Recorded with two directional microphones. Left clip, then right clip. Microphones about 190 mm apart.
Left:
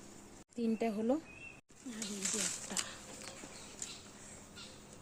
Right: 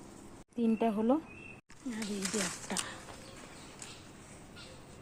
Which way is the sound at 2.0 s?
20° right (ahead or behind).